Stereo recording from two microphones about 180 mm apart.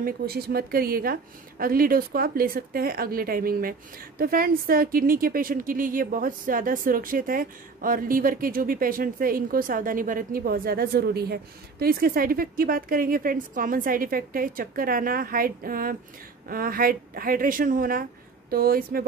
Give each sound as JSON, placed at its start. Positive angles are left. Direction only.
{"t": 0.0, "sound": "speech", "side_deg": -60}